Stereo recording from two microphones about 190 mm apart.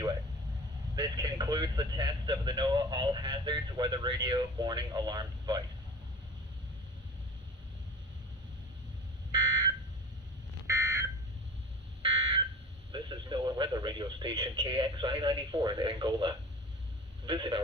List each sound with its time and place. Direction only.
0.9 s speech: 20° right (ahead or behind)
10.7 s a sound: 15° right (ahead or behind)
12.0 s fire alarm: 30° right (ahead or behind)
12.9 s speech: 25° right (ahead or behind)